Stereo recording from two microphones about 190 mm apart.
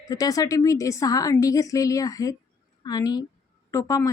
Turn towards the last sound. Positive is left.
turn(degrees=15)  # may be behind; listen again after turning